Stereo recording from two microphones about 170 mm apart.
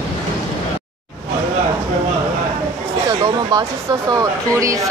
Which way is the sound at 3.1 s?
20° right (ahead or behind).